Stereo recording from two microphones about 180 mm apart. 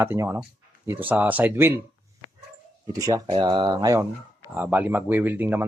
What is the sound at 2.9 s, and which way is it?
Speech, 20° right (ahead or behind).